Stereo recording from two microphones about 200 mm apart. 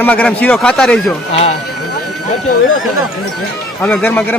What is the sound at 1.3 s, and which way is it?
Speech, 30° left (ahead or behind).